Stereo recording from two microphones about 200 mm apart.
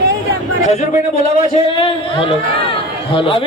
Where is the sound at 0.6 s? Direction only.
35° left (ahead or behind).